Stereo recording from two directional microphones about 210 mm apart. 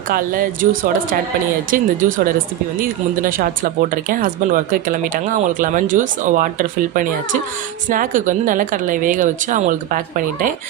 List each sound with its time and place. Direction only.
0.1 s speech: 40° right (ahead or behind)